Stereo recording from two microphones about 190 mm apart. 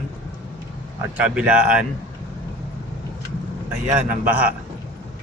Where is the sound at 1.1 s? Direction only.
5° right (ahead or behind).